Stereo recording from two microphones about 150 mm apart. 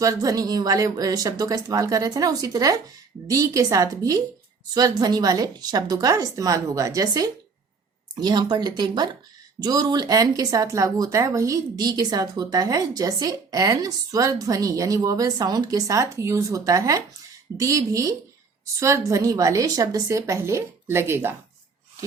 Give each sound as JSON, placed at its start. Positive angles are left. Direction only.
{"t": 0.0, "sound": "speech", "side_deg": -25}